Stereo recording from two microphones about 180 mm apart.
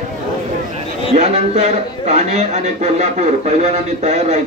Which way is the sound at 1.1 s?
40° right (ahead or behind).